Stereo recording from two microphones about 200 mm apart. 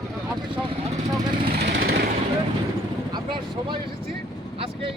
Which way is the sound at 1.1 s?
25° right (ahead or behind).